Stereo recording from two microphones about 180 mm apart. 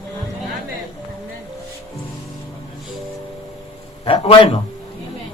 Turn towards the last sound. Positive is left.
turn(degrees=30)  # may be behind; listen again after turning